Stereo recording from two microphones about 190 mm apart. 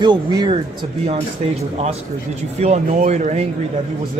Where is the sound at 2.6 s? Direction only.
35° right (ahead or behind).